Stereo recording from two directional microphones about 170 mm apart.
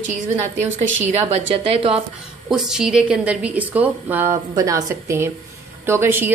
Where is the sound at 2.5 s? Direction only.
5° right (ahead or behind).